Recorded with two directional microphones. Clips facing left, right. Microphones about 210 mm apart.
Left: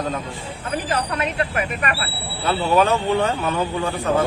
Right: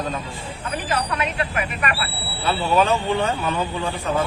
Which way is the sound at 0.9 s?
40° left (ahead or behind).